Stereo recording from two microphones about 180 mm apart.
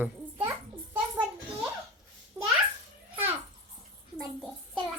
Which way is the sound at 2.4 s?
15° right (ahead or behind).